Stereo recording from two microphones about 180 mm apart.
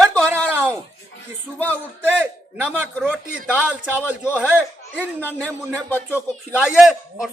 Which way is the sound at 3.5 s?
10° right (ahead or behind).